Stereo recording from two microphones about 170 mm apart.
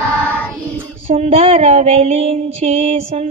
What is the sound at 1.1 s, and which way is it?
Female singing, 35° right (ahead or behind).